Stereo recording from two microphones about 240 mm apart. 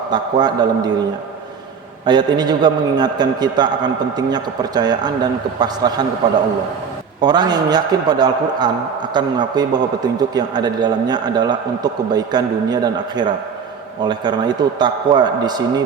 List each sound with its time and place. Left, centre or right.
0.1 s a man's voice: centre
2.0 s a man's voice: centre
7.2 s a man's voice: centre